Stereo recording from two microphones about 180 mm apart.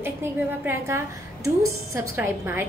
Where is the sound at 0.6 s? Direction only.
15° right (ahead or behind).